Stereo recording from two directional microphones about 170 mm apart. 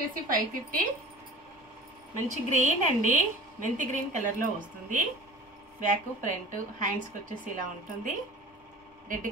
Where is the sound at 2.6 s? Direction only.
50° right (ahead or behind).